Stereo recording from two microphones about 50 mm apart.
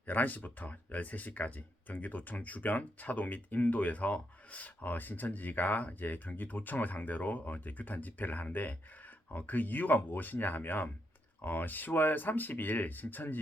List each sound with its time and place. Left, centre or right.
0.0 s speech: left